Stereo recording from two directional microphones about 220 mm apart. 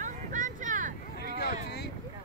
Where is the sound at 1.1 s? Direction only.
45° left (ahead or behind).